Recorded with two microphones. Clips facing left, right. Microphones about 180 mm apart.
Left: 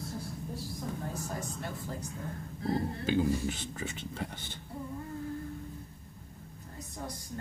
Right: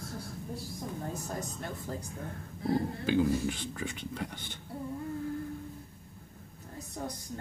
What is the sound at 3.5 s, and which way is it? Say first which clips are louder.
Speech: right 1 dB; 50° right (ahead or behind).